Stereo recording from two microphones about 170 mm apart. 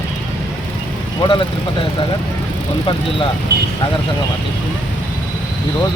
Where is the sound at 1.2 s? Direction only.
30° left (ahead or behind).